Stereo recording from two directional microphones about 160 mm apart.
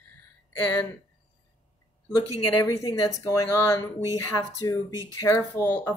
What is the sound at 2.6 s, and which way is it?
Speech, 20° left (ahead or behind).